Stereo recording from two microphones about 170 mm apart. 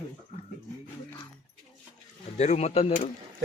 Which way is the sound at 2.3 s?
40° left (ahead or behind).